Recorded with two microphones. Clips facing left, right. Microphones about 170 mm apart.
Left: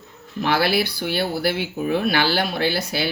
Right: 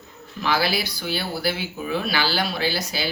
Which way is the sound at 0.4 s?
60° left (ahead or behind).